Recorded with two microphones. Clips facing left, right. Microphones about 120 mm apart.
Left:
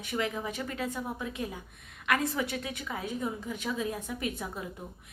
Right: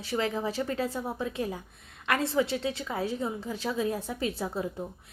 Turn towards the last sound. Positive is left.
turn(degrees=-30)  # may be behind; listen again after turning